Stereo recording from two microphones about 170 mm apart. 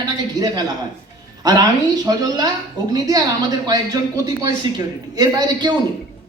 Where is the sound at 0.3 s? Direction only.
20° right (ahead or behind).